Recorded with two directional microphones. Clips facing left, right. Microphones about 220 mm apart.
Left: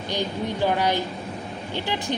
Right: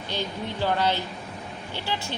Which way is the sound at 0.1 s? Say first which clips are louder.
Left 4 dB; 15° left (ahead or behind).